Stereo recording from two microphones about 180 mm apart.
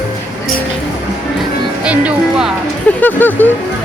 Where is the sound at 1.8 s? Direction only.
5° right (ahead or behind).